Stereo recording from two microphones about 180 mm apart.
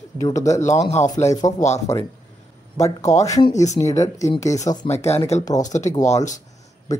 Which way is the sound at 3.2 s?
20° left (ahead or behind).